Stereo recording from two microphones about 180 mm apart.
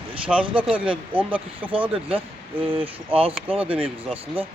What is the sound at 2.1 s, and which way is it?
Speech, 30° right (ahead or behind).